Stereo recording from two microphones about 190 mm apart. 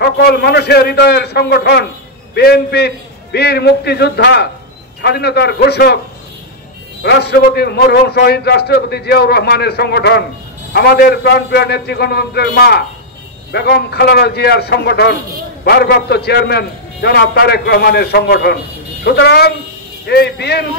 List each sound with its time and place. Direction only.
0.0 s a man's voice: 60° left (ahead or behind)
7.0 s a man's voice: 60° left (ahead or behind)